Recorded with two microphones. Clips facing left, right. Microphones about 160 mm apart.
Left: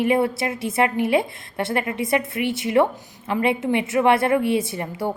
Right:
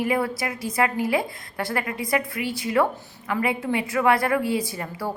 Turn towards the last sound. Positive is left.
turn(degrees=25)  # may be behind; listen again after turning